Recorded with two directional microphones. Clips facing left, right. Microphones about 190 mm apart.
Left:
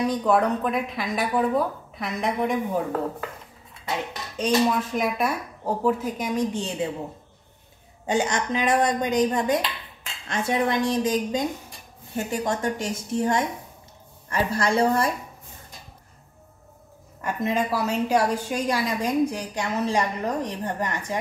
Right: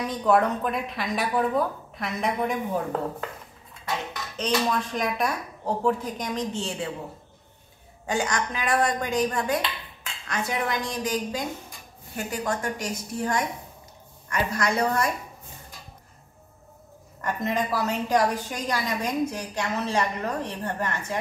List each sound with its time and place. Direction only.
0.0 s speech: centre (ahead or behind)
4.6 s speech: 5° left (ahead or behind)
8.1 s a woman's voice: 20° left (ahead or behind)
17.2 s a woman's voice: 10° left (ahead or behind)